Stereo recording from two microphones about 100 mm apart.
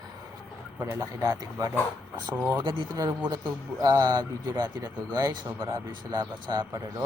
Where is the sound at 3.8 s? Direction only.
40° right (ahead or behind).